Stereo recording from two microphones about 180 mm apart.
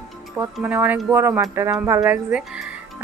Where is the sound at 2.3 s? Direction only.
5° right (ahead or behind).